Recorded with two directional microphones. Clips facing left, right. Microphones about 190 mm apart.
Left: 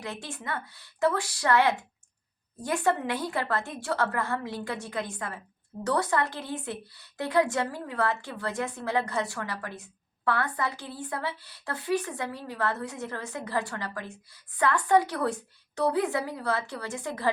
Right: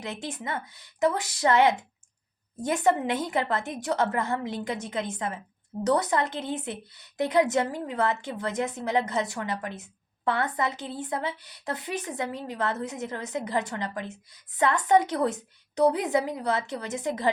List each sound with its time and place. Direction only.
0.0 s a woman's voice: 20° right (ahead or behind)